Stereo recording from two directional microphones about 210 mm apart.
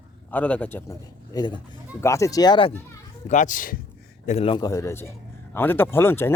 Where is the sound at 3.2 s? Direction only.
35° left (ahead or behind).